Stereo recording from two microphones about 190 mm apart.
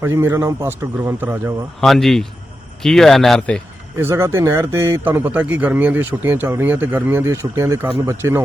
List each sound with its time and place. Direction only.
0.0 s speech: 15° right (ahead or behind)
1.8 s speech: centre (ahead or behind)
3.9 s speech: 15° right (ahead or behind)